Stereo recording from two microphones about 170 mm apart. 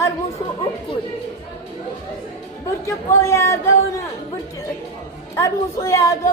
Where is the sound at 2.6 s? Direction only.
15° left (ahead or behind).